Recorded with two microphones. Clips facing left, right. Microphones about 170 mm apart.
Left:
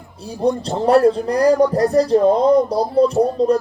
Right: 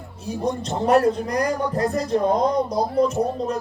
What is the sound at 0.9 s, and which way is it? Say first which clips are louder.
Speech: left 5 dB; 30° left (ahead or behind).